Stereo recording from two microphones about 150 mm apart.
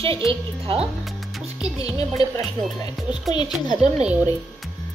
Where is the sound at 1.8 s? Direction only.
25° left (ahead or behind).